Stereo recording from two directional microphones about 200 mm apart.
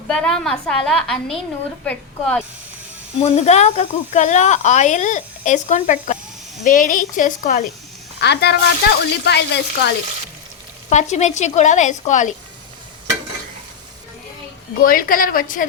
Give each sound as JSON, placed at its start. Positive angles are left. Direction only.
{"t": 0.1, "sound": "a woman's voice", "side_deg": 5}
{"t": 3.2, "sound": "speech", "side_deg": 35}
{"t": 8.2, "sound": "speech", "side_deg": 55}
{"t": 10.8, "sound": "speech", "side_deg": 35}
{"t": 14.8, "sound": "a woman's voice", "side_deg": 45}